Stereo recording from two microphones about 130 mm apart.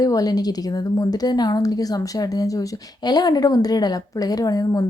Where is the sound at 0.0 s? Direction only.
30° left (ahead or behind).